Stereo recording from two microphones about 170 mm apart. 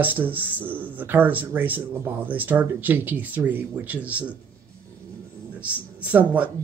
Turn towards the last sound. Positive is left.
turn(degrees=-10)  # may be behind; listen again after turning